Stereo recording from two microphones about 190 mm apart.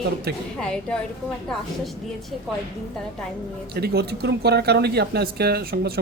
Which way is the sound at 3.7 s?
60° right (ahead or behind).